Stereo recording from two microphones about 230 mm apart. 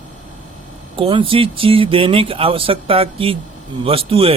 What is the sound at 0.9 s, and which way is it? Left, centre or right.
Speech, right.